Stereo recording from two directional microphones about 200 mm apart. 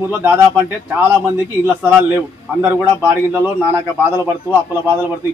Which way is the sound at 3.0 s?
10° right (ahead or behind).